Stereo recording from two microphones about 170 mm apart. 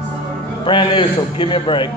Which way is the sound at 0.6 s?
30° left (ahead or behind).